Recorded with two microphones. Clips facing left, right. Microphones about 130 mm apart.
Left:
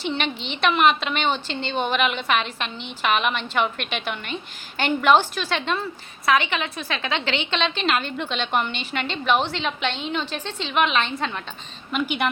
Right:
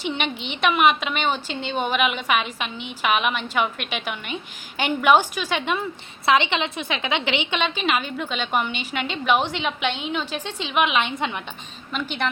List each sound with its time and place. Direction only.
0.0 s a woman's voice: 15° right (ahead or behind)
6.2 s a woman's voice: 25° right (ahead or behind)
11.9 s speech: 5° left (ahead or behind)